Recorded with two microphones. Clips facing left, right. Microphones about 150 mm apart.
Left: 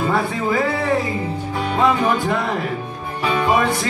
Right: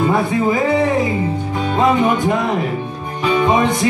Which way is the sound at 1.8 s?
20° right (ahead or behind).